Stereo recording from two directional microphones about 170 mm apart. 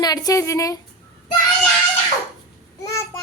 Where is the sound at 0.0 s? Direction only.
20° left (ahead or behind).